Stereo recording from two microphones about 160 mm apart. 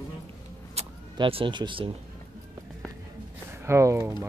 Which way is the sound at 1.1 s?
30° right (ahead or behind).